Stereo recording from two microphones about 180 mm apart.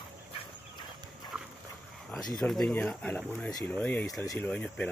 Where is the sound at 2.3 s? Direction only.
5° left (ahead or behind).